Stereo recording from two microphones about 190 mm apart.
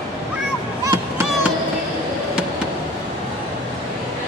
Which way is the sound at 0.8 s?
20° right (ahead or behind).